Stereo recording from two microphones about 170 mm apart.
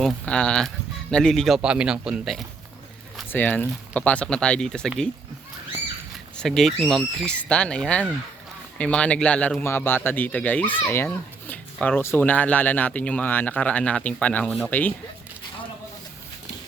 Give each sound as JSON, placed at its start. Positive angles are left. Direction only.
{"t": 0.0, "sound": "speech", "side_deg": 5}
{"t": 3.2, "sound": "speech", "side_deg": 10}
{"t": 6.3, "sound": "speech", "side_deg": 5}